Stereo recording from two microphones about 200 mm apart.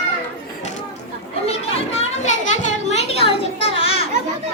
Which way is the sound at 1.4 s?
30° left (ahead or behind).